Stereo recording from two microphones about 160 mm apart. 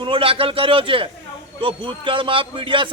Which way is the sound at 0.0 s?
35° right (ahead or behind).